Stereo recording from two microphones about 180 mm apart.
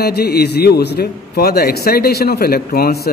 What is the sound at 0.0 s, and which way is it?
A man's voice, 60° left (ahead or behind).